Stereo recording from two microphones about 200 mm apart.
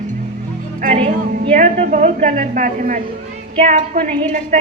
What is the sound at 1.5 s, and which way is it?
A woman's voice, 35° right (ahead or behind).